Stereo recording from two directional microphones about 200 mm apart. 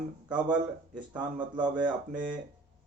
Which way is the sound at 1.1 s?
5° right (ahead or behind).